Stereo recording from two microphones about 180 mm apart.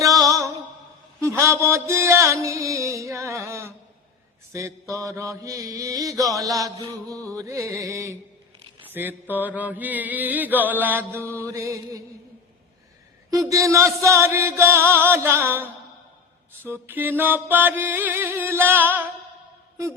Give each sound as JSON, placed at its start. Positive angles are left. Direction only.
{"t": 0.2, "sound": "music", "side_deg": -20}
{"t": 4.5, "sound": "chant", "side_deg": -15}
{"t": 13.3, "sound": "chant", "side_deg": -20}
{"t": 16.6, "sound": "music", "side_deg": -10}